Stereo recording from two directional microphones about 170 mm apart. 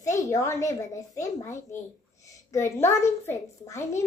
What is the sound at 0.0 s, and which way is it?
A child's voice, 20° left (ahead or behind).